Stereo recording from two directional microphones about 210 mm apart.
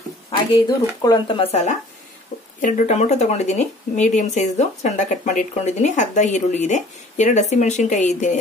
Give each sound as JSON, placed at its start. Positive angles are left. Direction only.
{"t": 1.0, "sound": "speech", "side_deg": 20}